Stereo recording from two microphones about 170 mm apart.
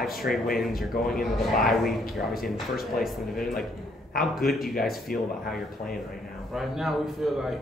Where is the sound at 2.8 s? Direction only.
Centre (ahead or behind).